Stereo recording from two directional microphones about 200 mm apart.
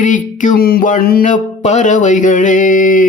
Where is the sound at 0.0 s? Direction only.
40° left (ahead or behind).